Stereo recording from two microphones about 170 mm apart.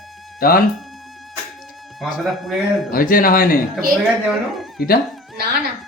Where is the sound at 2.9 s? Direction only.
55° left (ahead or behind).